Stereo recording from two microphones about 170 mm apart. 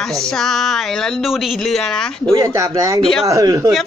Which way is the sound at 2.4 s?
20° right (ahead or behind).